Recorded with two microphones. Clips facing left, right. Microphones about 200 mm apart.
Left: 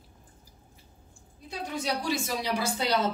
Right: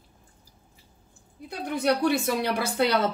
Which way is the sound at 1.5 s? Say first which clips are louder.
Right 7 dB; 60° right (ahead or behind).